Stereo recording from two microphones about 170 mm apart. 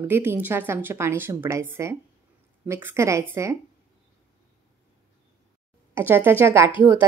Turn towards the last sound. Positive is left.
turn(degrees=-15)  # may be behind; listen again after turning